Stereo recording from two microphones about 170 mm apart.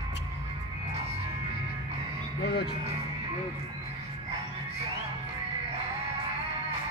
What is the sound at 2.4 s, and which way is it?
Music, 75° left (ahead or behind).